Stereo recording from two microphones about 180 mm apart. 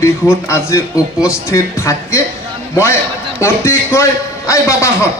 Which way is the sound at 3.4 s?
15° left (ahead or behind).